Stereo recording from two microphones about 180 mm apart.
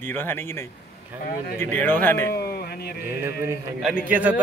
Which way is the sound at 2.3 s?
60° left (ahead or behind).